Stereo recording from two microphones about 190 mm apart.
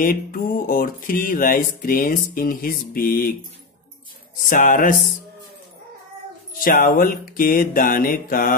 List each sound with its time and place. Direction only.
0.0 s speech: 50° left (ahead or behind)
4.5 s speech: 45° left (ahead or behind)
6.6 s speech: 50° left (ahead or behind)